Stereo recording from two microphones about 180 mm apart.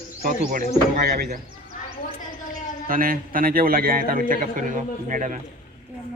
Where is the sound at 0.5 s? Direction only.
60° right (ahead or behind).